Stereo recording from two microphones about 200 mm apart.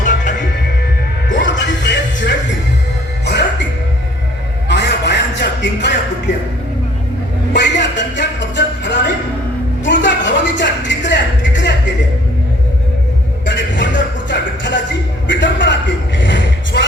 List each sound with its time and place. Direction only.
0.0 s music: 40° left (ahead or behind)
1.4 s music: 65° left (ahead or behind)
4.7 s a sound: 60° left (ahead or behind)
7.5 s music: 60° left (ahead or behind)
13.4 s music: 65° left (ahead or behind)
15.3 s a sound: 65° left (ahead or behind)